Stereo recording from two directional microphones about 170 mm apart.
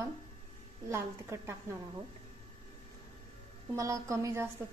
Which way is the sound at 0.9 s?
15° right (ahead or behind).